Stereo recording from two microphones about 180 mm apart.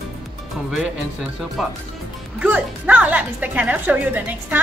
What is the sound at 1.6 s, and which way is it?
A woman's voice, centre (ahead or behind).